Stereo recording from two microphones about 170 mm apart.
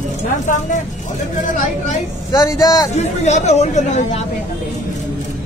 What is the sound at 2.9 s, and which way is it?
Speech, 40° left (ahead or behind).